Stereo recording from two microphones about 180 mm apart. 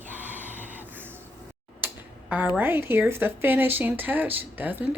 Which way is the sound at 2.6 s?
10° right (ahead or behind).